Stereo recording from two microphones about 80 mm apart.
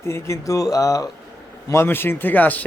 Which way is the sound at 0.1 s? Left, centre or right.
Left.